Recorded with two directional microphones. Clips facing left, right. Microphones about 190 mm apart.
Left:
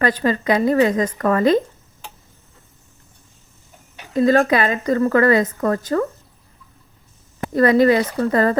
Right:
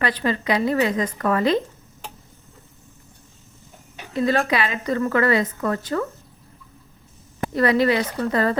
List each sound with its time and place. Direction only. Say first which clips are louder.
0.0 s a woman's voice: left 4 dB; 45° left (ahead or behind)
4.1 s a woman's voice: left 6 dB; 45° left (ahead or behind)
7.5 s a woman's voice: left 5 dB; 45° left (ahead or behind)